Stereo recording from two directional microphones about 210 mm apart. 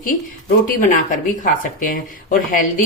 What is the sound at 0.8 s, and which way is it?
Speech, 35° left (ahead or behind).